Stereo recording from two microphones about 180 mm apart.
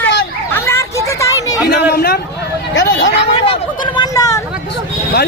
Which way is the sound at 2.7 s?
85° left.